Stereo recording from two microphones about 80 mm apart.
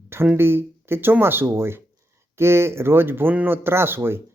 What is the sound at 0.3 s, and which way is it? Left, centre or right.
Speech, right.